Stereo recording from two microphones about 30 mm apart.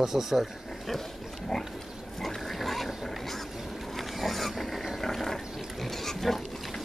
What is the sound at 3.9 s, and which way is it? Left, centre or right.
Mechanisms, centre.